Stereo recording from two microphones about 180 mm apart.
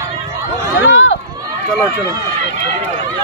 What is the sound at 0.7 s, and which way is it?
Run, 90° left.